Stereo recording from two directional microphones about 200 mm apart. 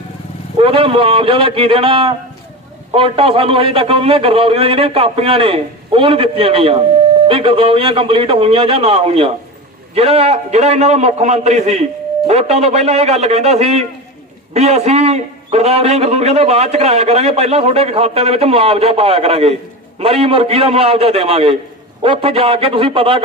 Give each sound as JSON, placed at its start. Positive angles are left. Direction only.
{"t": 0.6, "sound": "a man's voice", "side_deg": -30}